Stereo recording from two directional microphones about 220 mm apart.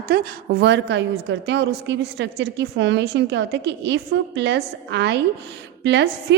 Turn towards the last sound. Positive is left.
turn(degrees=-50)  # may be behind; listen again after turning